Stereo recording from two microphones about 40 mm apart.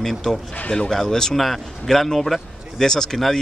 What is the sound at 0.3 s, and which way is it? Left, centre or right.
Speech, centre.